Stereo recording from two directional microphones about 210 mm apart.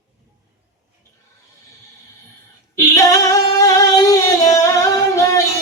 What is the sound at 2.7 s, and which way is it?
Singing, 15° left (ahead or behind).